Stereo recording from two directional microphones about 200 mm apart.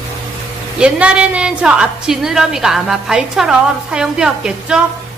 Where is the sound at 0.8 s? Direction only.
5° right (ahead or behind).